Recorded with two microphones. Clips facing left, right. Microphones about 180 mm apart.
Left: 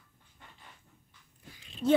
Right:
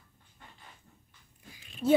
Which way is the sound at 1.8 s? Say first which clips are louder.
Right 1 dB; 5° right (ahead or behind).